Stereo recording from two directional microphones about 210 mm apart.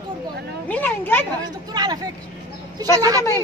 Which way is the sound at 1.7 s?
20° right (ahead or behind).